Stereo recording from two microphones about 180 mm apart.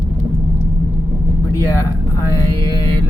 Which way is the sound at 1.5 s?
15° left (ahead or behind).